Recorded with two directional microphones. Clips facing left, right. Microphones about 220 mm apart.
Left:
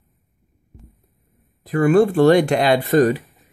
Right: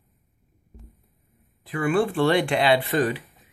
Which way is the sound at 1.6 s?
40° left (ahead or behind).